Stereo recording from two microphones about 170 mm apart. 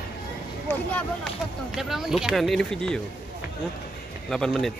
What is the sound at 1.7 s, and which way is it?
Speech, centre (ahead or behind).